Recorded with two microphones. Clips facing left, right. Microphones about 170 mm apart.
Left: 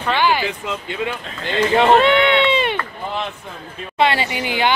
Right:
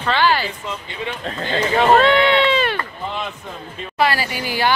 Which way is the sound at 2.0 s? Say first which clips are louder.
Even; 20° left (ahead or behind).